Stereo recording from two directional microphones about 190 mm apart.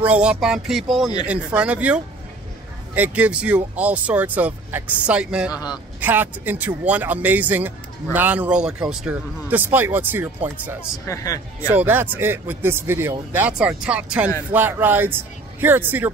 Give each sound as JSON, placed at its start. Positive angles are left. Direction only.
{"t": 0.0, "sound": "speech", "side_deg": -5}
{"t": 5.5, "sound": "a man's voice", "side_deg": 20}
{"t": 5.9, "sound": "speech", "side_deg": -10}
{"t": 11.1, "sound": "speech", "side_deg": 15}
{"t": 11.7, "sound": "speech", "side_deg": -10}